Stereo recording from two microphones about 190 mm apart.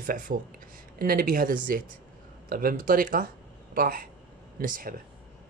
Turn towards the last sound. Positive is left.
turn(degrees=-50)  # may be behind; listen again after turning